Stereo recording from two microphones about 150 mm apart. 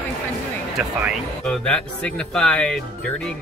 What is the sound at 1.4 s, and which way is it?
Speech, 5° left (ahead or behind).